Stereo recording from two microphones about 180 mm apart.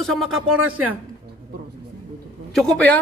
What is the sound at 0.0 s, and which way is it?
Speech, centre (ahead or behind).